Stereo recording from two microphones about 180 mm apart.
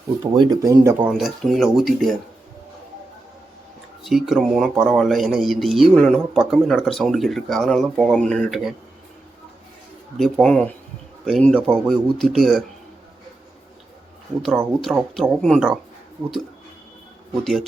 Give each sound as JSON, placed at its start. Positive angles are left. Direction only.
{"t": 0.3, "sound": "speech", "side_deg": -20}
{"t": 1.1, "sound": "speech", "side_deg": 0}
{"t": 4.0, "sound": "speech", "side_deg": 0}
{"t": 10.2, "sound": "speech", "side_deg": 0}
{"t": 14.8, "sound": "speech", "side_deg": 0}
{"t": 17.4, "sound": "speech", "side_deg": 0}